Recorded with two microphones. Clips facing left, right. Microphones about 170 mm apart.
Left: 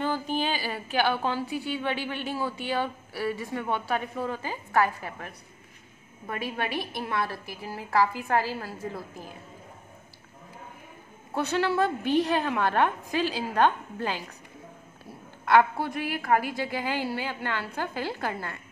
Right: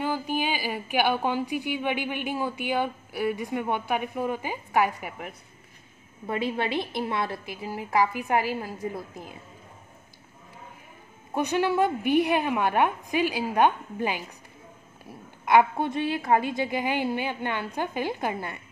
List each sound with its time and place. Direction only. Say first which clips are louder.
0.0 s a woman's voice: even; 10° right (ahead or behind)
11.3 s a woman's voice: right 2 dB; 15° right (ahead or behind)